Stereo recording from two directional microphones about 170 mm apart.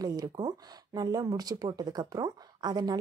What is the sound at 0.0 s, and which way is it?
Speech, 20° right (ahead or behind).